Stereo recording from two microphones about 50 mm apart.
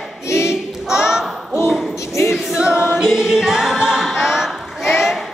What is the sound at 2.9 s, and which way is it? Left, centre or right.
Music, centre.